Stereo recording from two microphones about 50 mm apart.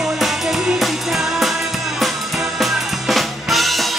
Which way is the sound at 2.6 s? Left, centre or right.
Centre.